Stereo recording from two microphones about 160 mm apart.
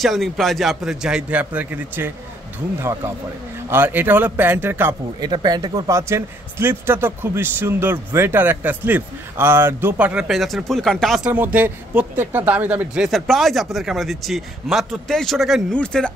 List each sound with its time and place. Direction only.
0.0 s speech: centre (ahead or behind)
5.2 s speech: 25° right (ahead or behind); by 16.1 s 5° left (ahead or behind)